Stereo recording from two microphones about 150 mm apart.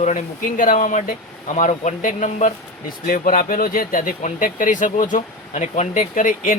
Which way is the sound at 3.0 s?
70° left (ahead or behind).